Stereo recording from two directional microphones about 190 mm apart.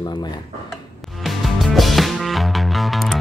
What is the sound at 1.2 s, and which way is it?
Music, centre (ahead or behind).